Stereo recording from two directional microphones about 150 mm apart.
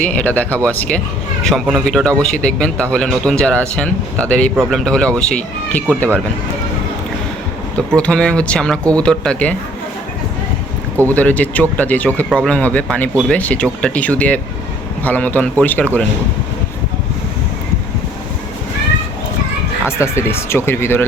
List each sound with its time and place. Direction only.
0.0 s speech: 10° left (ahead or behind)
7.8 s speech: 5° left (ahead or behind)
11.1 s speech: 10° left (ahead or behind)
20.0 s speech: 15° left (ahead or behind)